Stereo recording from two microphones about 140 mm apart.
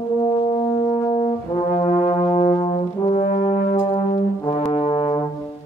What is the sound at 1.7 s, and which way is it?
Brass instrument, 50° left (ahead or behind).